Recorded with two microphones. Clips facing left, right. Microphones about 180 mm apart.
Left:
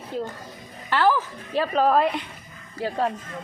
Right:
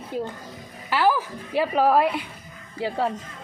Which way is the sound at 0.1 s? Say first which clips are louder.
Right 1 dB; 10° right (ahead or behind).